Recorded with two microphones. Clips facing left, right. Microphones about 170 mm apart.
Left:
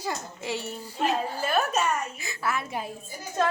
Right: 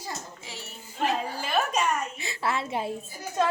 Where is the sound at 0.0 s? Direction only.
70° left (ahead or behind).